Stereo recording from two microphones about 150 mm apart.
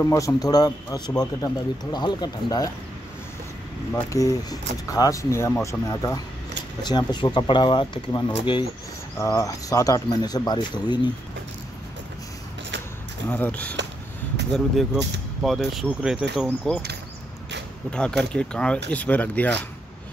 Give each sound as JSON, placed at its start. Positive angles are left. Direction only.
{"t": 0.0, "sound": "a man's voice", "side_deg": 20}
{"t": 3.9, "sound": "a man's voice", "side_deg": 20}
{"t": 13.3, "sound": "speech", "side_deg": 10}
{"t": 15.4, "sound": "speech", "side_deg": 0}
{"t": 16.4, "sound": "speech", "side_deg": 10}
{"t": 17.9, "sound": "speech", "side_deg": 5}